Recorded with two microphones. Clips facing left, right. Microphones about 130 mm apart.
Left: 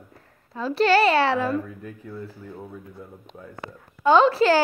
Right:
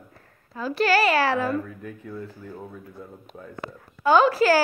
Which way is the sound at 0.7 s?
30° left (ahead or behind).